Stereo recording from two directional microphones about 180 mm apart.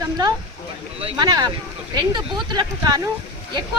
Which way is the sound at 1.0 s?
25° right (ahead or behind).